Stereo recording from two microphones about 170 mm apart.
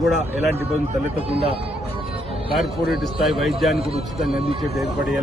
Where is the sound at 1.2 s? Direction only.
35° right (ahead or behind).